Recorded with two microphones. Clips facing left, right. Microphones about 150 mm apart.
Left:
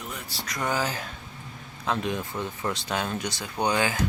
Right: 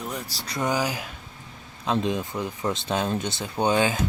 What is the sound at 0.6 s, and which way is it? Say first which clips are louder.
Speech: right 3 dB; 15° right (ahead or behind).